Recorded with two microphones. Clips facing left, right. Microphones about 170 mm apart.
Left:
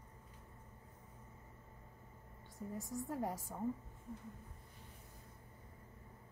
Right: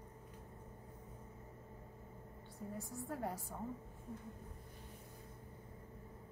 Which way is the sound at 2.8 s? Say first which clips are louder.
Left 4 dB; 20° left (ahead or behind).